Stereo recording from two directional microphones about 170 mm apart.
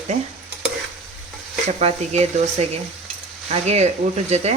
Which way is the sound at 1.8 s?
40° right (ahead or behind).